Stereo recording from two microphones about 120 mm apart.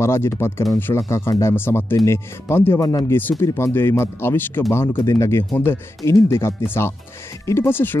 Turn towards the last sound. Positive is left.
turn(degrees=15)  # may be behind; listen again after turning